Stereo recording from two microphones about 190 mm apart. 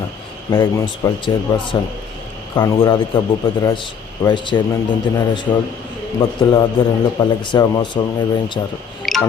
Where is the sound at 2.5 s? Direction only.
15° left (ahead or behind).